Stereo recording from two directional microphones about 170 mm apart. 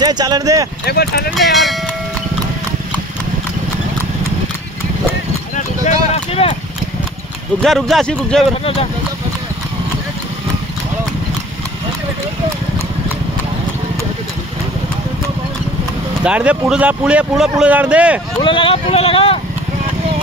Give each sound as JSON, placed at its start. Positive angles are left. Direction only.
{"t": 0.0, "sound": "speech", "side_deg": -25}
{"t": 0.8, "sound": "speech", "side_deg": 70}
{"t": 1.3, "sound": "cowbell", "side_deg": 0}
{"t": 5.9, "sound": "a sound", "side_deg": 35}
{"t": 7.6, "sound": "a man's voice", "side_deg": 0}
{"t": 16.3, "sound": "speech", "side_deg": -5}
{"t": 18.4, "sound": "speech", "side_deg": 30}